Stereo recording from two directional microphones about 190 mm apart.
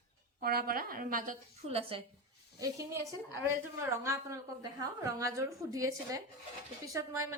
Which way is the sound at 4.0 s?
15° right (ahead or behind).